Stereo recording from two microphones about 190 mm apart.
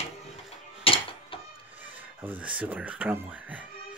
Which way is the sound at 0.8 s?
30° left (ahead or behind).